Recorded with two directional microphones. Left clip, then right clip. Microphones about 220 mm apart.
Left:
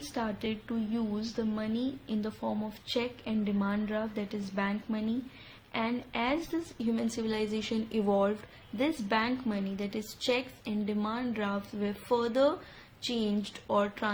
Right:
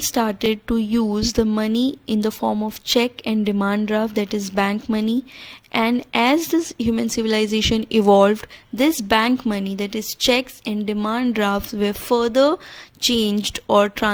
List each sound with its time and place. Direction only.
0.1 s speech: 50° right (ahead or behind)